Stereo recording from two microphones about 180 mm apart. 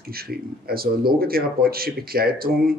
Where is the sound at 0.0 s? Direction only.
55° right (ahead or behind).